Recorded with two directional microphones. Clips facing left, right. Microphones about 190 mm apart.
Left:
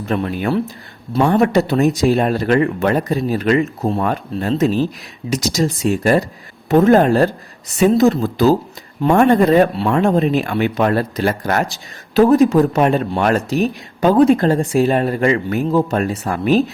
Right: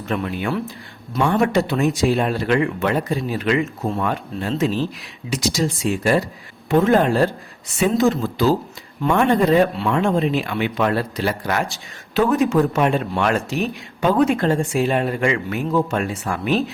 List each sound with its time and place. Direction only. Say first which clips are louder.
0.0 s speech: left 4 dB; 40° left (ahead or behind)
12.1 s speech: left 6 dB; 35° left (ahead or behind)